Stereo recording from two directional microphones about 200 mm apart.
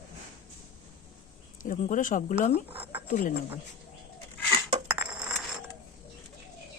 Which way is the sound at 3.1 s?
40° left (ahead or behind).